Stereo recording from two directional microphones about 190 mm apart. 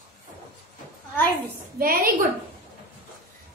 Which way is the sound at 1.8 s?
50° right (ahead or behind).